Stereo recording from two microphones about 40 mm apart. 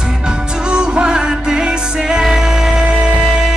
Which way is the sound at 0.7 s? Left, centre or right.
Right.